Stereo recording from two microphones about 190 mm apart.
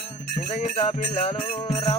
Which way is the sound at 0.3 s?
35° left (ahead or behind).